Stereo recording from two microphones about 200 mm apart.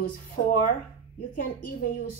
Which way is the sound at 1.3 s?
45° left (ahead or behind).